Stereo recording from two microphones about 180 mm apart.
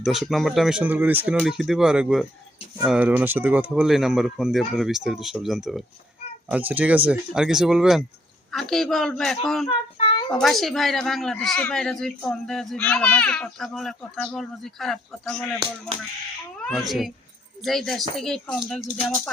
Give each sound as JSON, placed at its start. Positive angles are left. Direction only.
{"t": 0.0, "sound": "speech", "side_deg": 0}
{"t": 9.6, "sound": "child singing", "side_deg": 30}
{"t": 10.3, "sound": "speech", "side_deg": 0}
{"t": 16.6, "sound": "speech", "side_deg": 0}